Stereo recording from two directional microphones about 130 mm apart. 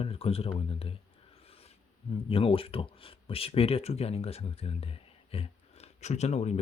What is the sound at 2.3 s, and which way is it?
Speech, 45° left (ahead or behind).